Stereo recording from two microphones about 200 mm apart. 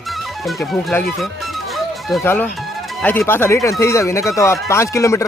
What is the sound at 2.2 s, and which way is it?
Speech, 10° left (ahead or behind).